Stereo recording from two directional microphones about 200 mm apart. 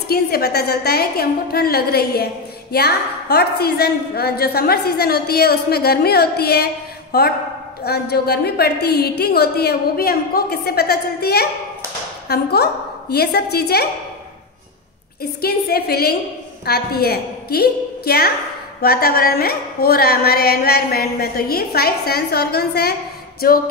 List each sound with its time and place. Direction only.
0.1 s a woman's voice: 50° left (ahead or behind)
15.4 s a woman's voice: 50° left (ahead or behind)